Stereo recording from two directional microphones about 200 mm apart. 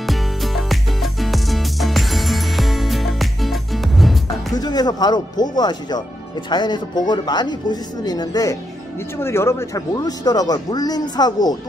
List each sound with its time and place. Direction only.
0.0 s music: centre (ahead or behind)
4.6 s speech: 20° left (ahead or behind)